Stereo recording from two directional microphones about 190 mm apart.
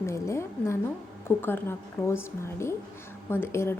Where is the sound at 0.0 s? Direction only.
15° left (ahead or behind).